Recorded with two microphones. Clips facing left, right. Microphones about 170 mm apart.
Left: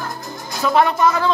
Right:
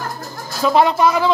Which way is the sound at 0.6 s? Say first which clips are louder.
Right 2 dB; 20° right (ahead or behind).